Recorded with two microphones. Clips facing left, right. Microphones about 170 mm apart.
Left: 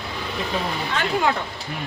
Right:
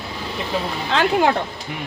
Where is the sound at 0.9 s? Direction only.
80° right.